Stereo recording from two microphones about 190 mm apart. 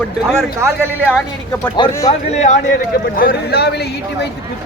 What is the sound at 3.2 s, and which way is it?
Speech, 55° left (ahead or behind).